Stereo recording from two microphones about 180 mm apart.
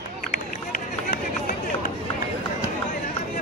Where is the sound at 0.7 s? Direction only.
50° left (ahead or behind).